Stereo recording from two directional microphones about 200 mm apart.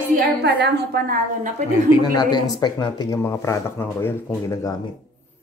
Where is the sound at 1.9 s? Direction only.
20° left (ahead or behind).